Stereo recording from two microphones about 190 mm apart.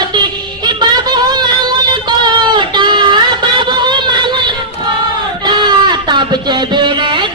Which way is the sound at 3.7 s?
25° right (ahead or behind).